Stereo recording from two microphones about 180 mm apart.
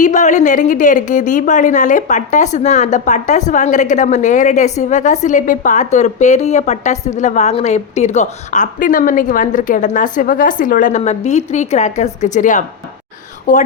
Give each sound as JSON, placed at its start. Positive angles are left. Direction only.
{"t": 0.0, "sound": "a woman's voice", "side_deg": 45}